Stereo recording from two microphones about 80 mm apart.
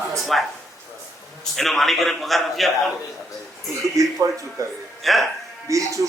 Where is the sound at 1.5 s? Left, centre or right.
Centre.